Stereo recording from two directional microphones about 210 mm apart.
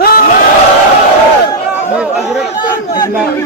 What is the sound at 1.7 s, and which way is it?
Speech, 5° right (ahead or behind).